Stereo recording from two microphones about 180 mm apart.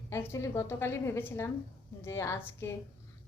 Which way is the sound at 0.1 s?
15° left (ahead or behind).